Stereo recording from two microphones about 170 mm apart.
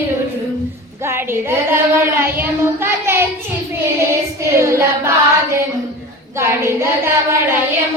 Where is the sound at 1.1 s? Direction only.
15° right (ahead or behind).